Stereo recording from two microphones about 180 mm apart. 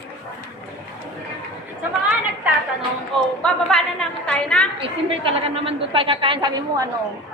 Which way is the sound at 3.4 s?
5° left (ahead or behind).